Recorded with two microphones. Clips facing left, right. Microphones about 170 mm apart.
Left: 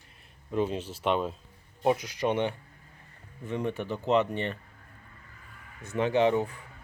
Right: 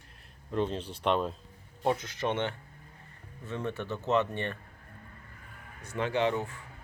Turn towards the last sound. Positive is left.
turn(degrees=20)  # may be behind; listen again after turning